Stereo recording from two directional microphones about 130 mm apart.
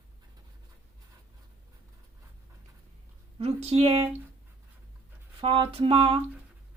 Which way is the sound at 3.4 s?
50° right (ahead or behind).